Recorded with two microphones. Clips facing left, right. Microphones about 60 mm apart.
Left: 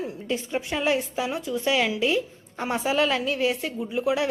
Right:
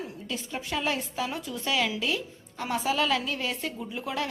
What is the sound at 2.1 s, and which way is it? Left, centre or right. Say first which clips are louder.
A woman's voice: left 6 dB; left.